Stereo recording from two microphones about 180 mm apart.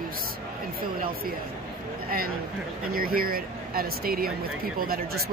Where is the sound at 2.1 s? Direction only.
55° right (ahead or behind).